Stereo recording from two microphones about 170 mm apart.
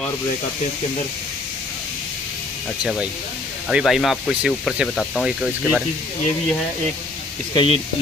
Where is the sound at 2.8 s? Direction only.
5° right (ahead or behind).